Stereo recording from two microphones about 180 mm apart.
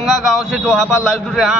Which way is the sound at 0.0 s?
Centre (ahead or behind).